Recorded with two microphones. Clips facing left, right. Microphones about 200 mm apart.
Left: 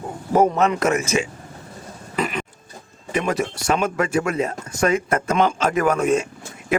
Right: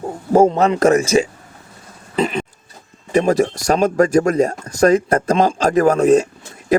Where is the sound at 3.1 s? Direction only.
40° right (ahead or behind).